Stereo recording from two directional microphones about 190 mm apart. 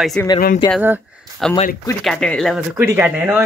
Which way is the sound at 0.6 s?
20° left (ahead or behind).